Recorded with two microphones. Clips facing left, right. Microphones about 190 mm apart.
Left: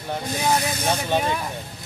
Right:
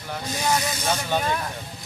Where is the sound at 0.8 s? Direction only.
15° left (ahead or behind).